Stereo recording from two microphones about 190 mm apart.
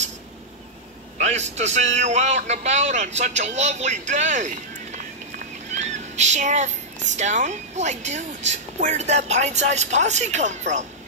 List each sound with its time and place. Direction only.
1.1 s vehicle: 35° right (ahead or behind)
1.6 s speech: 35° right (ahead or behind)